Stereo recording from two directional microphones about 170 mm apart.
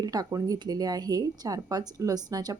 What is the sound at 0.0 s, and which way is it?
Speech, 20° right (ahead or behind).